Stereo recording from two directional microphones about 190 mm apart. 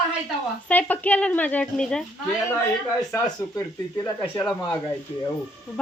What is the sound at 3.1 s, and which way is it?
Speech, 15° left (ahead or behind).